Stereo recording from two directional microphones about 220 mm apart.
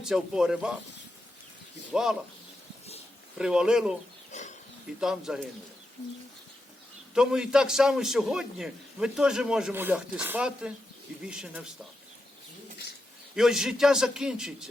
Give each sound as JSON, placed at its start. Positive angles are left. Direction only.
{"t": 0.0, "sound": "a man's voice", "side_deg": -5}
{"t": 1.9, "sound": "speech", "side_deg": 0}
{"t": 3.3, "sound": "a man's voice", "side_deg": -5}
{"t": 4.3, "sound": "bird", "side_deg": 30}
{"t": 4.9, "sound": "a man's voice", "side_deg": 0}
{"t": 7.1, "sound": "a man's voice", "side_deg": -5}
{"t": 13.3, "sound": "a man's voice", "side_deg": 0}